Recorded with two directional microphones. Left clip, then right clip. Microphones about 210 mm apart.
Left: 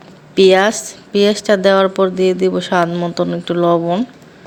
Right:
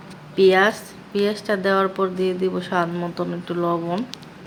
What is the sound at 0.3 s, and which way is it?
Speech, 35° left (ahead or behind).